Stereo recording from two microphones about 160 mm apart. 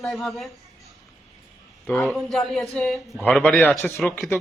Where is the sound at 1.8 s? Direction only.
5° left (ahead or behind).